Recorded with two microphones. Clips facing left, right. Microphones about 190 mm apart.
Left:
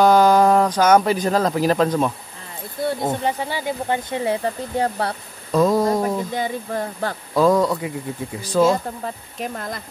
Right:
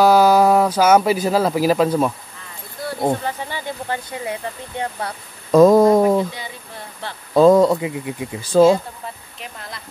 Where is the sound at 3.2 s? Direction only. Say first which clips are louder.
Left 3 dB; 15° left (ahead or behind).